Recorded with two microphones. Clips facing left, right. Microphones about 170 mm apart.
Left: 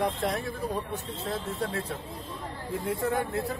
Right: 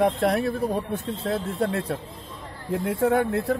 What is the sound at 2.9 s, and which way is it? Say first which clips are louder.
Speech: right 7 dB; 70° right (ahead or behind).